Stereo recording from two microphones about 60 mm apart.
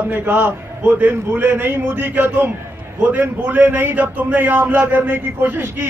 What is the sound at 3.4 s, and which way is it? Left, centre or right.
A man's voice, right.